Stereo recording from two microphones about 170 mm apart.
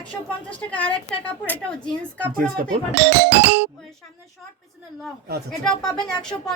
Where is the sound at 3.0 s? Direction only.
90° right.